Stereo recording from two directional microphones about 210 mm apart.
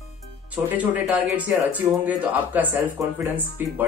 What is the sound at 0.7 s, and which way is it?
Speech, 5° right (ahead or behind).